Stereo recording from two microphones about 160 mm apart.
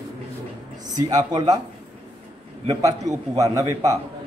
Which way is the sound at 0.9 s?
25° right (ahead or behind).